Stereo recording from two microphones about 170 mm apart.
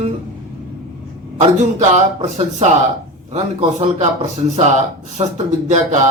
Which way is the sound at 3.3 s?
40° right (ahead or behind).